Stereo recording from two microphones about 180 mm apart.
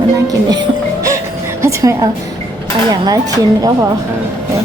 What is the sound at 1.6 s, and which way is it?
A woman's voice, 15° right (ahead or behind).